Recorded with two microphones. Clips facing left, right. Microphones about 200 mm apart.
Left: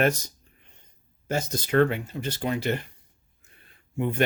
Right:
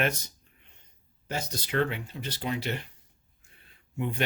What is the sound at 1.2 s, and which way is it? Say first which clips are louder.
Speech: left 6 dB; 50° left (ahead or behind).